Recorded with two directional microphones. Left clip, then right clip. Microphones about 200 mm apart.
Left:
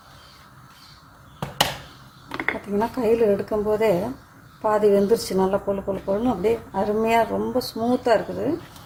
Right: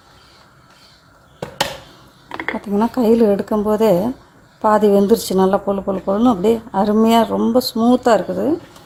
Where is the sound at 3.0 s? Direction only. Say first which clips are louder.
Right 5 dB; 35° right (ahead or behind).